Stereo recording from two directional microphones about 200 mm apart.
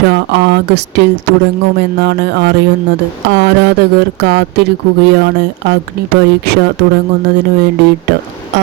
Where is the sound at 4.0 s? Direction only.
60° right (ahead or behind).